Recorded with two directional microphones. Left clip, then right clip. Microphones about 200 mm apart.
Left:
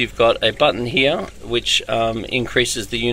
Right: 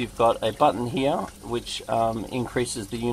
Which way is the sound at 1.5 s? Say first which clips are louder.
Left 8 dB; centre (ahead or behind).